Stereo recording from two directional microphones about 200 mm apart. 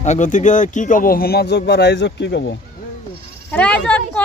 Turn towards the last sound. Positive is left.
turn(degrees=5)  # may be behind; listen again after turning